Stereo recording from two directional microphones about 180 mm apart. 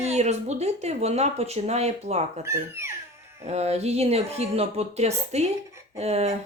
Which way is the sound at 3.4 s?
35° right (ahead or behind).